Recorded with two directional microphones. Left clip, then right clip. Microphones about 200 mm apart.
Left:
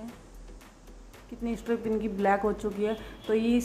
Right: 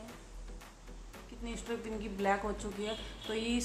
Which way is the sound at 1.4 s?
30° left (ahead or behind).